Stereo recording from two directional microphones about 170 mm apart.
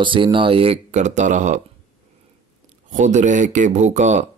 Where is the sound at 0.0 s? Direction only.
30° right (ahead or behind); by 1.6 s 45° right (ahead or behind).